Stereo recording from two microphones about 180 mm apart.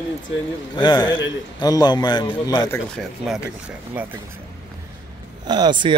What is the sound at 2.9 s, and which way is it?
Speech, 5° right (ahead or behind).